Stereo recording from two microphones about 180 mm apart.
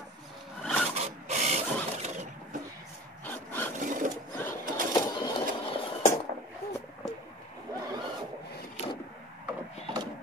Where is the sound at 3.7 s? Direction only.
45° right (ahead or behind).